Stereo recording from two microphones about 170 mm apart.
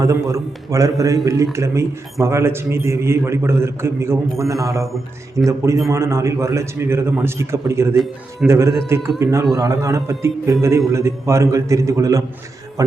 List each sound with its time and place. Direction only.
0.0 s a man's voice: 20° right (ahead or behind)
7.9 s speech: centre (ahead or behind)
8.4 s a man's voice: 15° right (ahead or behind)